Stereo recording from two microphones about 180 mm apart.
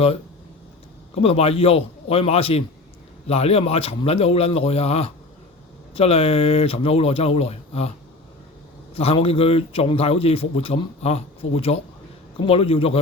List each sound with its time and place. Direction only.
1.1 s a man's voice: 35° left (ahead or behind)
9.0 s a man's voice: 35° left (ahead or behind)